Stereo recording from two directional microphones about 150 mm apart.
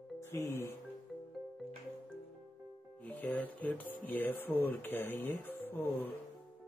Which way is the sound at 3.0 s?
10° left (ahead or behind).